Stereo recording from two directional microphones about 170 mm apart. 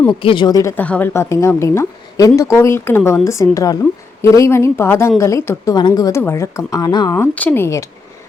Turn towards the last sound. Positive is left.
turn(degrees=15)  # may be behind; listen again after turning